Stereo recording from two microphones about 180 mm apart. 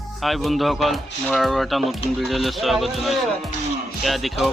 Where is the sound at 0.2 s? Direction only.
Centre (ahead or behind).